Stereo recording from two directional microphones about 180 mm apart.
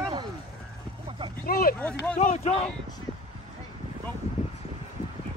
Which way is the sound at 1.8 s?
5° left (ahead or behind).